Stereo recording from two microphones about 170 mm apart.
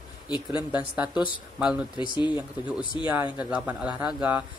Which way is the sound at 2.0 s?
25° left (ahead or behind).